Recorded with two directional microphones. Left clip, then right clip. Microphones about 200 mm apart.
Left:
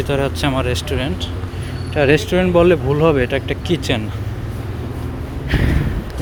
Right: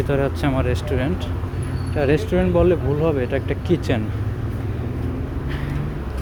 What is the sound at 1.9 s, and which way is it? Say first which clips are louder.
Speech: left 5 dB; 5° left (ahead or behind).